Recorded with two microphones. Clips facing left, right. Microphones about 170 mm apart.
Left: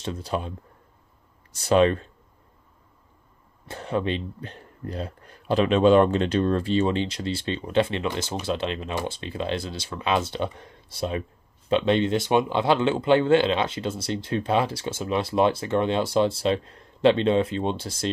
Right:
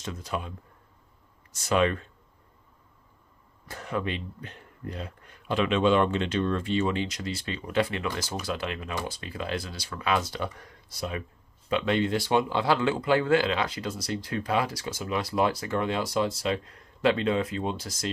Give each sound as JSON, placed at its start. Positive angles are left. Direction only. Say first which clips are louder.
{"t": 0.0, "sound": "speech", "louder": "left 5 dB", "side_deg": 30}
{"t": 3.6, "sound": "speech", "louder": "left 5 dB", "side_deg": 30}